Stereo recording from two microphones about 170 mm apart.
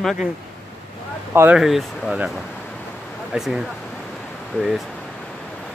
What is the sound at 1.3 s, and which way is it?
Speech, 15° right (ahead or behind).